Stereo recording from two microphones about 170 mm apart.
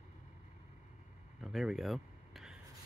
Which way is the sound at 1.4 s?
Centre (ahead or behind).